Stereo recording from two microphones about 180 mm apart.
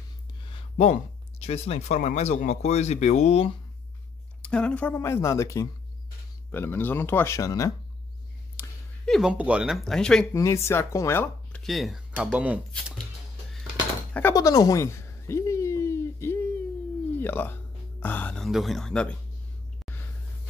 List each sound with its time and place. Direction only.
0.5 s a sound: 30° left (ahead or behind)
1.4 s speech: 35° left (ahead or behind)
4.4 s speech: 5° left (ahead or behind)
8.6 s a sound: 10° left (ahead or behind)
9.0 s speech: centre (ahead or behind)
10.3 s speech: 15° left (ahead or behind)
11.6 s speech: centre (ahead or behind)
14.3 s a sound: 20° left (ahead or behind)
17.2 s speech: 10° left (ahead or behind)